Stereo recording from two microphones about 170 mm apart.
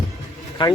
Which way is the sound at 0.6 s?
30° left (ahead or behind).